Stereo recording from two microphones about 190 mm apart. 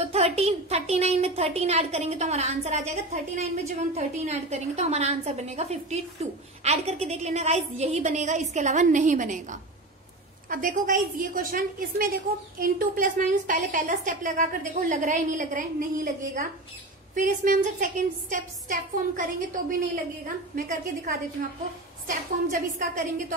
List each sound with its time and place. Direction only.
0.0 s a woman's voice: 35° right (ahead or behind)